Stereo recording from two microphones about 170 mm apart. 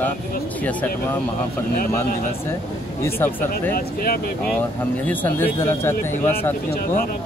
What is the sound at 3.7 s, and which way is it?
Speech, 60° left (ahead or behind).